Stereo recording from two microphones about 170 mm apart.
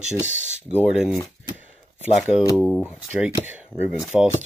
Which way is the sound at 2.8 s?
5° right (ahead or behind).